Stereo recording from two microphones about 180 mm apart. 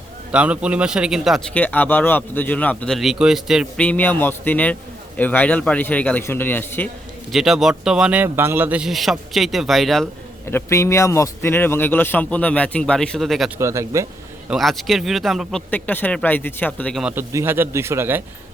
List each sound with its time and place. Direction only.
0.3 s a man's voice: 5° right (ahead or behind)
1.5 s a man's voice: 10° left (ahead or behind)
3.8 s a man's voice: 10° left (ahead or behind)
7.3 s a man's voice: centre (ahead or behind)
10.5 s a man's voice: 15° left (ahead or behind)
13.6 s speech: 15° right (ahead or behind)
14.5 s a man's voice: centre (ahead or behind)
17.0 s a man's voice: 5° right (ahead or behind)